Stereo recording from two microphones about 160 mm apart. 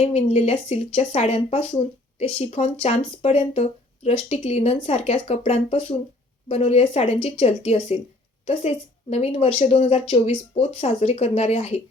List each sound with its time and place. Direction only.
0.0 s speech: 40° left (ahead or behind)